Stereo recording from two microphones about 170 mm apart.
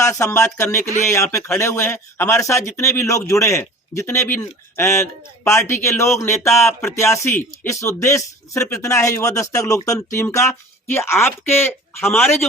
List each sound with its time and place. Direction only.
0.0 s speech: 15° left (ahead or behind)